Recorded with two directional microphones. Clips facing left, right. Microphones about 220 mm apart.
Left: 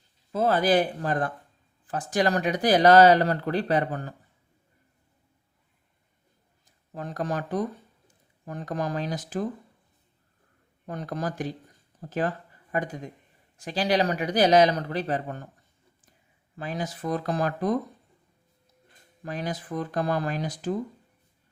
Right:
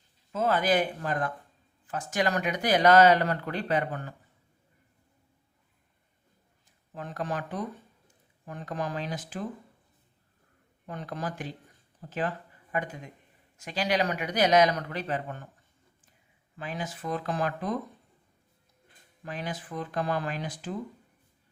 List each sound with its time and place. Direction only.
0.3 s speech: 35° left (ahead or behind)
6.9 s speech: 40° left (ahead or behind)
10.8 s speech: 40° left (ahead or behind)
16.6 s speech: 40° left (ahead or behind)
19.2 s speech: 40° left (ahead or behind)